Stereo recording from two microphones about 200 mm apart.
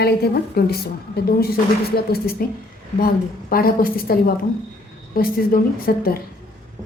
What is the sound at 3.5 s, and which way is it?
A woman's voice, 45° left (ahead or behind).